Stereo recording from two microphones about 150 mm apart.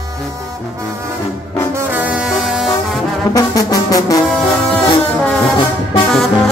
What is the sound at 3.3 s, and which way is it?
Music, 25° left (ahead or behind).